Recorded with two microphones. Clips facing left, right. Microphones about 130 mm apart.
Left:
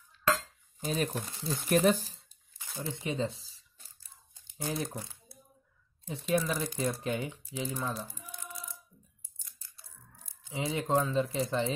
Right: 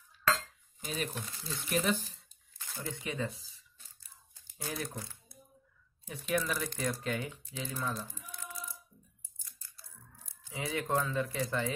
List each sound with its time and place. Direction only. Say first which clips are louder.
0.7 s speech: left 6 dB; 40° left (ahead or behind)
2.8 s speech: left 4 dB; 25° left (ahead or behind)
4.3 s crumpling: left 5 dB; 20° left (ahead or behind)
6.3 s speech: left 3 dB; 20° left (ahead or behind)
10.4 s speech: left 3 dB; 25° left (ahead or behind)